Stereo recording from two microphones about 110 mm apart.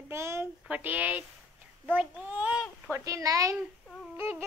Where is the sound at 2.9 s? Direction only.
30° right (ahead or behind).